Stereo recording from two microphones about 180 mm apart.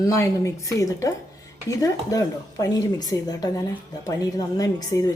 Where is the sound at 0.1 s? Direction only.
15° left (ahead or behind).